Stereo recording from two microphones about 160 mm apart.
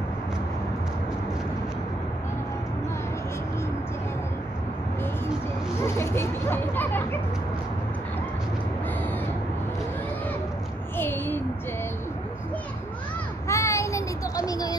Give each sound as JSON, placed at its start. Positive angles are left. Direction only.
{"t": 5.8, "sound": "hubbub", "side_deg": 15}
{"t": 11.0, "sound": "a sound", "side_deg": 15}
{"t": 13.5, "sound": "child singing", "side_deg": 20}